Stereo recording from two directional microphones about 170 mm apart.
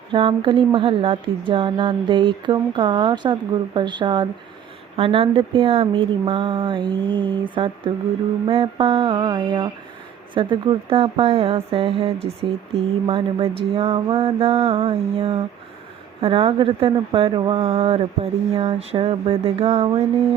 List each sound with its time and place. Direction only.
0.1 s speech: 30° right (ahead or behind)